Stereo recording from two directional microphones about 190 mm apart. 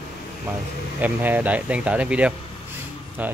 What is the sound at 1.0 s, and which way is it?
Speech, 10° right (ahead or behind).